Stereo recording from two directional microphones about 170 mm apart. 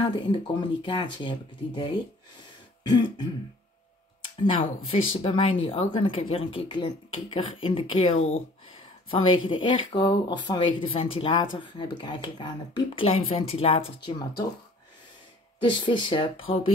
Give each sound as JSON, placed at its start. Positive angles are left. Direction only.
{"t": 0.0, "sound": "speech", "side_deg": 25}
{"t": 2.8, "sound": "speech", "side_deg": 25}
{"t": 15.6, "sound": "speech", "side_deg": 25}